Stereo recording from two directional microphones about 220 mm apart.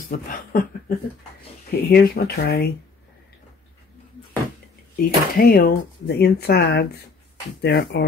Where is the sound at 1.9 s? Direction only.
45° left (ahead or behind).